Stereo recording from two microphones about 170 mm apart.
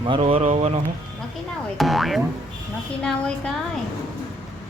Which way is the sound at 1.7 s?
Centre (ahead or behind).